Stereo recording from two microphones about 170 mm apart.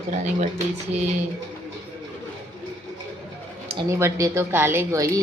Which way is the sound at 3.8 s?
15° right (ahead or behind).